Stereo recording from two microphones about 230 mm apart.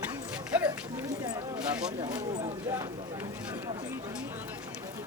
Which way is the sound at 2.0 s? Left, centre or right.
Centre.